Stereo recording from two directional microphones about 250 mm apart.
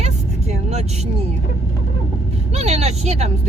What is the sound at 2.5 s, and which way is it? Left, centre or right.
Music, right.